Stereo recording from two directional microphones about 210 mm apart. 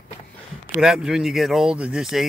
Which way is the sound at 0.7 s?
Centre (ahead or behind).